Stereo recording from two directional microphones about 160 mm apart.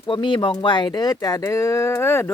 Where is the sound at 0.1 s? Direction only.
30° left (ahead or behind).